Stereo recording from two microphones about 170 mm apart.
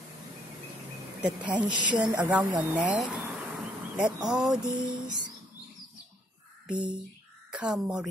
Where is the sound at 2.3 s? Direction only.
10° right (ahead or behind).